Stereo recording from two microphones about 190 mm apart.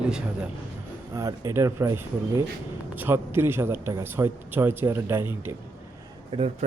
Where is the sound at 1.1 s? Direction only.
15° right (ahead or behind).